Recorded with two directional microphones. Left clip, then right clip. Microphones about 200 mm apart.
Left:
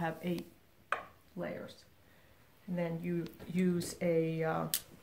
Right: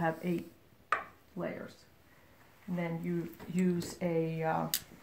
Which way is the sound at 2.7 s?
15° left (ahead or behind).